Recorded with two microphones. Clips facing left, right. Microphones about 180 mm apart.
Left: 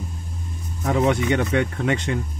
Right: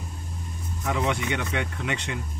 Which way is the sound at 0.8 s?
40° left (ahead or behind).